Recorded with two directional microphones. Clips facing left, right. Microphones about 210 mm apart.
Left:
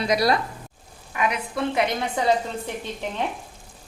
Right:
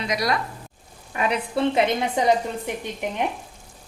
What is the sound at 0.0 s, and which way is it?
Speech, 35° left (ahead or behind).